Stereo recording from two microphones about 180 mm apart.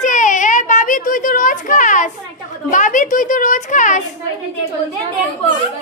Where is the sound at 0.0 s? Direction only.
45° left (ahead or behind).